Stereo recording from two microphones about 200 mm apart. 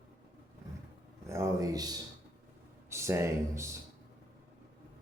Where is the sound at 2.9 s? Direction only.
15° right (ahead or behind).